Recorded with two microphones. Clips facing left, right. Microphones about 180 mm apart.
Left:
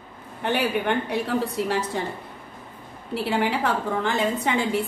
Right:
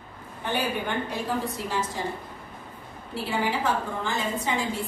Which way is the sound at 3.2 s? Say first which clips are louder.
Left 3 dB; 65° left (ahead or behind).